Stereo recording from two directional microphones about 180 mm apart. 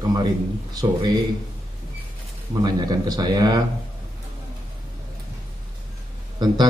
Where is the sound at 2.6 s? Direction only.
20° right (ahead or behind).